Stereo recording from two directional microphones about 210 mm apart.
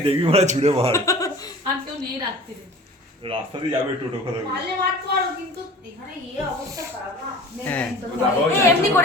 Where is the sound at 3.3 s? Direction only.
25° right (ahead or behind).